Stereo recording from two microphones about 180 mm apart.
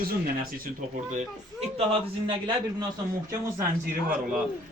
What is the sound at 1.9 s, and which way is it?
Speech, 25° right (ahead or behind).